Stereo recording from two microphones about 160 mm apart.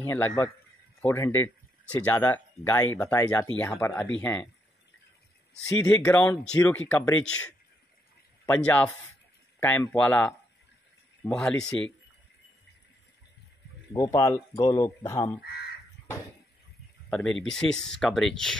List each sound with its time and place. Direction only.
0.0 s speech: 15° left (ahead or behind)
5.8 s speech: 10° left (ahead or behind)
13.9 s speech: 20° left (ahead or behind)
17.1 s speech: 5° left (ahead or behind)